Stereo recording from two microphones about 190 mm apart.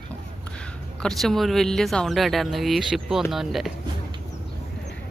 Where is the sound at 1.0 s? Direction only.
Centre (ahead or behind).